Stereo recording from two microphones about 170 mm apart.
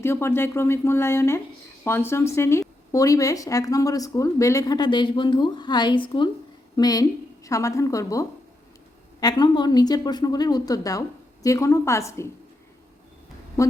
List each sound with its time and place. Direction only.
0.0 s speech: 15° left (ahead or behind)
13.6 s speech: 20° left (ahead or behind)